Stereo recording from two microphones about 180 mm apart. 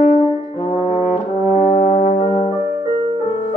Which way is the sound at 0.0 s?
45° left (ahead or behind).